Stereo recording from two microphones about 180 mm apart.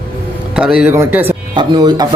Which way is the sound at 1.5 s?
25° right (ahead or behind).